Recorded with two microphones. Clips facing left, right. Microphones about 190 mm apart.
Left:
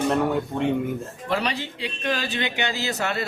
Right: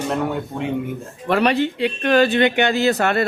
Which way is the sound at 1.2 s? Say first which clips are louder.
Right 9 dB; 60° right (ahead or behind).